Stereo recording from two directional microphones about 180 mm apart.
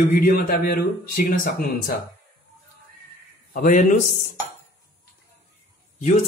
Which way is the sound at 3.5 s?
45° left (ahead or behind).